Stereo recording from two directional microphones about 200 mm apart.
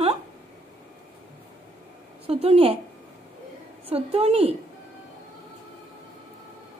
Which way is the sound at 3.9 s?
30° right (ahead or behind).